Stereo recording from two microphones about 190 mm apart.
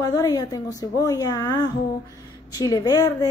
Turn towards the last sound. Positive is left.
turn(degrees=20)  # may be behind; listen again after turning